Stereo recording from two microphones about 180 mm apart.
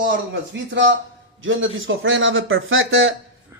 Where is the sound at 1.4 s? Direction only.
90° right.